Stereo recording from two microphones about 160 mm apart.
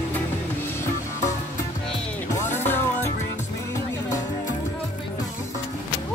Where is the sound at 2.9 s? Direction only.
45° left (ahead or behind).